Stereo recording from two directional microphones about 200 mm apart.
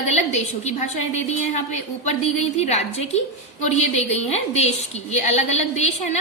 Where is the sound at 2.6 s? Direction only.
30° left (ahead or behind).